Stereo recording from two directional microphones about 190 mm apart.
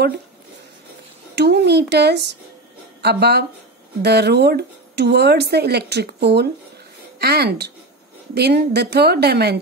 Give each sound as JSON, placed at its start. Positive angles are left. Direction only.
{"t": 1.3, "sound": "speech", "side_deg": -60}